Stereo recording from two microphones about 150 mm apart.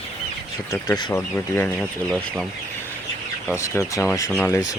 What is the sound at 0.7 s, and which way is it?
Speech, 25° left (ahead or behind).